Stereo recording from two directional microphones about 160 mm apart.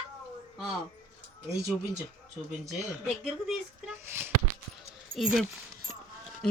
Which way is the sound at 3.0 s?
Centre (ahead or behind).